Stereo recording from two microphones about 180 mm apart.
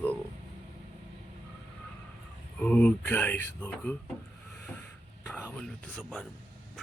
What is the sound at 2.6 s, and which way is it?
Speech, 5° left (ahead or behind).